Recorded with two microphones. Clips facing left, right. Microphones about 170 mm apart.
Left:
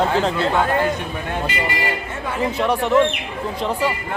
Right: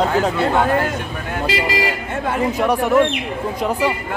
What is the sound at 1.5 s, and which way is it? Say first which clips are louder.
Speech: right 4 dB; 90° right.